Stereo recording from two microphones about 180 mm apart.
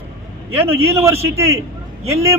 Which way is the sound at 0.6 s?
15° right (ahead or behind).